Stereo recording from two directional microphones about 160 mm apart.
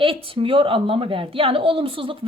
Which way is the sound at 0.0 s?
35° right (ahead or behind).